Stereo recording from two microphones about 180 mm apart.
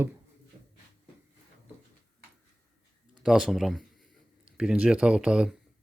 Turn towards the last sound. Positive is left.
turn(degrees=-5)  # may be behind; listen again after turning